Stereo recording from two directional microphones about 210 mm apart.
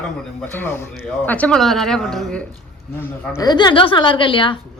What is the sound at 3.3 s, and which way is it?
A woman's voice, 20° left (ahead or behind).